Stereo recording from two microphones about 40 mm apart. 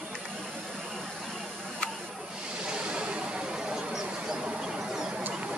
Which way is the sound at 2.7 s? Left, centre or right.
Right.